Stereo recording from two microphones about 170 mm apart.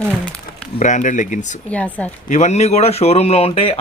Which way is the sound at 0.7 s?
45° left (ahead or behind).